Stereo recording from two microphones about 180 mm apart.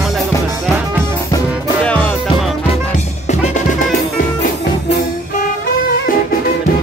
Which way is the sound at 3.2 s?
40° left (ahead or behind).